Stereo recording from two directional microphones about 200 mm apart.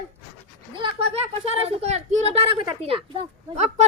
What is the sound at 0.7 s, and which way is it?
Speech, 25° right (ahead or behind).